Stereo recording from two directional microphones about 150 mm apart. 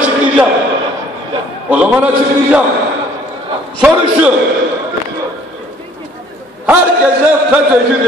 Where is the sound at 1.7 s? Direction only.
10° right (ahead or behind).